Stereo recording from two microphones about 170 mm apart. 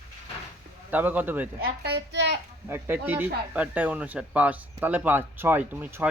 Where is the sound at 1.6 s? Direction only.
70° right (ahead or behind).